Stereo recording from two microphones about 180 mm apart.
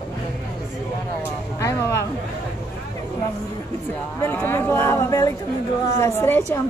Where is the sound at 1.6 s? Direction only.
15° left (ahead or behind).